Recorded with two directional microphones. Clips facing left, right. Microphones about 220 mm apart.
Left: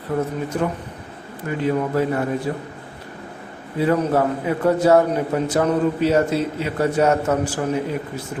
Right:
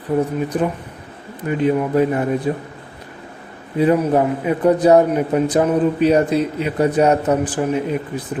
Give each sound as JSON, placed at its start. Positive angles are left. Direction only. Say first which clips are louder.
{"t": 0.2, "sound": "a man's voice", "louder": "right 3 dB", "side_deg": -15}
{"t": 3.8, "sound": "a man's voice", "louder": "right 3 dB", "side_deg": -15}